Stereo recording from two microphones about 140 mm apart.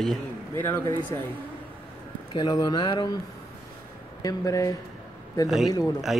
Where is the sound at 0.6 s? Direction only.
15° left (ahead or behind).